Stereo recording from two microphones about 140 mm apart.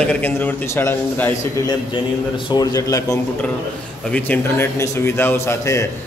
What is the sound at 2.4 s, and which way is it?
Speech, 25° left (ahead or behind).